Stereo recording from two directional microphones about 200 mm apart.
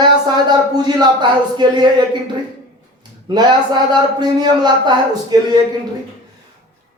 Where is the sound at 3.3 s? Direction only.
20° right (ahead or behind).